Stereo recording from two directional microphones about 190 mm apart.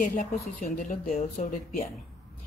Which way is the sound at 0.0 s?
40° left (ahead or behind).